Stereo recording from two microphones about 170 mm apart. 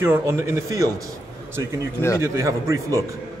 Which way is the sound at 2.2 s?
15° right (ahead or behind).